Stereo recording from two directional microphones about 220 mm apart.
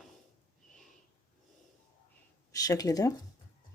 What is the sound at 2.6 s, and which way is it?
Speech, 15° left (ahead or behind).